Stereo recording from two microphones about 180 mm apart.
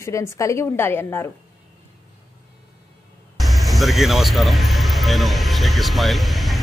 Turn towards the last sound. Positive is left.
turn(degrees=0)  # may be behind; listen again after turning